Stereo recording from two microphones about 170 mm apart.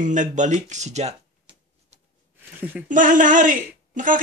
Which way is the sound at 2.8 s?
50° right (ahead or behind).